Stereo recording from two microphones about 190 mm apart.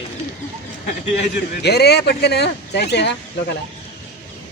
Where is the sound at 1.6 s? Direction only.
60° left (ahead or behind).